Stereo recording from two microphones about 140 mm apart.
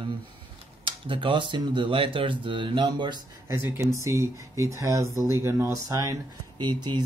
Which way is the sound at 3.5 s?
20° right (ahead or behind).